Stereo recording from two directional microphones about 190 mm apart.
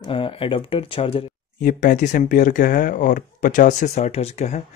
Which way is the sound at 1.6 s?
45° left (ahead or behind).